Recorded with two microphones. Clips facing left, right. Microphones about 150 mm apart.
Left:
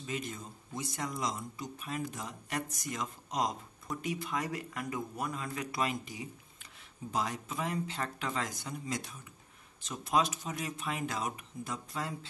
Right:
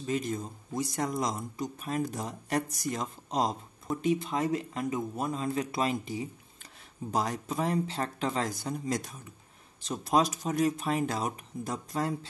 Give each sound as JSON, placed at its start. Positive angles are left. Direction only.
{"t": 0.0, "sound": "speech", "side_deg": -40}